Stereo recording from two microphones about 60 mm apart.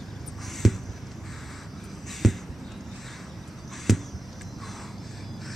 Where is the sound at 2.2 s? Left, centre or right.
Centre.